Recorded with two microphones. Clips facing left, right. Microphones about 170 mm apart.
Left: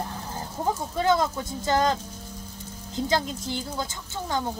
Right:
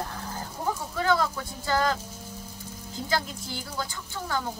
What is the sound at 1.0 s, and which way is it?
Speech, 20° left (ahead or behind).